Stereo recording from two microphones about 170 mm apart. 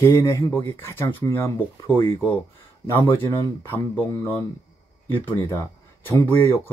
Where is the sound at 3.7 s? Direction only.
10° left (ahead or behind).